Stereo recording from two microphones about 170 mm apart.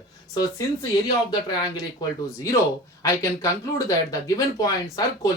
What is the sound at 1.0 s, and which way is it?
Speech, 25° left (ahead or behind).